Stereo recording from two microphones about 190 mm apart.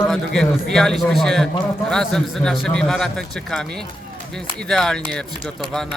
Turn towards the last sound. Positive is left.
turn(degrees=0)  # may be behind; listen again after turning